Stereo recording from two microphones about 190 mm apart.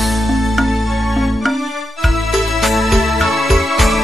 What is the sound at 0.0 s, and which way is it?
Music, centre (ahead or behind).